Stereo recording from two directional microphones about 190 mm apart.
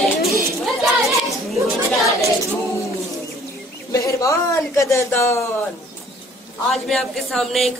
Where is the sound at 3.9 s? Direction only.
15° left (ahead or behind).